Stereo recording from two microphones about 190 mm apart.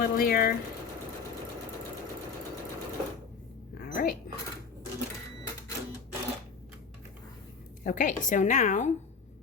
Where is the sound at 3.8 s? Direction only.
50° left (ahead or behind).